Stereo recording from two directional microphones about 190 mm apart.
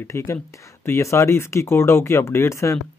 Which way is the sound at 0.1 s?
15° left (ahead or behind).